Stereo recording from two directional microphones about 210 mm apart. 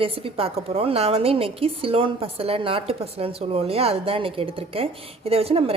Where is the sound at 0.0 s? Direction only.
25° right (ahead or behind).